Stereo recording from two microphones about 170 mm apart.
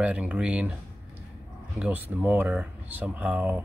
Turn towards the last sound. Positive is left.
turn(degrees=-10)  # may be behind; listen again after turning